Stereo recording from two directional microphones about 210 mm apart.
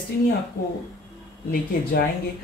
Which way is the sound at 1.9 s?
50° left (ahead or behind).